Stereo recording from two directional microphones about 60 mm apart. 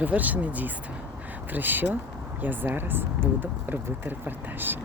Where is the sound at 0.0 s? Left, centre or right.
Right.